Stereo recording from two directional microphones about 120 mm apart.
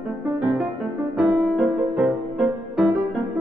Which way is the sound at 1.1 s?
5° right (ahead or behind).